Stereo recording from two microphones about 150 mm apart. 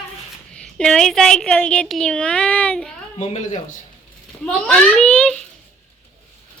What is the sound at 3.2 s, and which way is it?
Speech, 50° left (ahead or behind).